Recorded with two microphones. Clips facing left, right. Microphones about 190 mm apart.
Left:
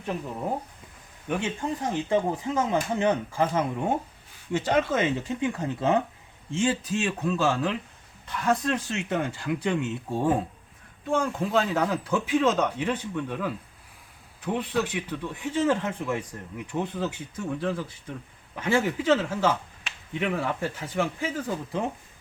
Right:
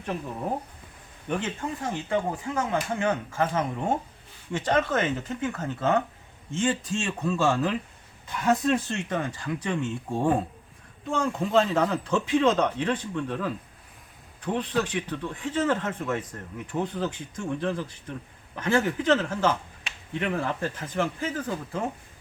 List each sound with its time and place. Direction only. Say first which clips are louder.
1.3 s speech: left 1 dB; 15° left (ahead or behind); by 8.8 s 10° right (ahead or behind)
9.0 s speech: left 1 dB; 5° left (ahead or behind)